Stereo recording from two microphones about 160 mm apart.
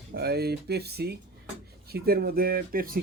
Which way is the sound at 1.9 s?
75° right (ahead or behind).